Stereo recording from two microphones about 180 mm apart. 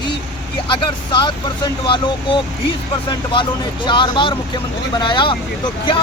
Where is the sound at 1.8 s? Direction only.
25° left (ahead or behind).